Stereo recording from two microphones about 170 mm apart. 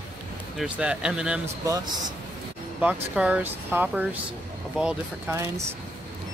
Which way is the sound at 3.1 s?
10° right (ahead or behind).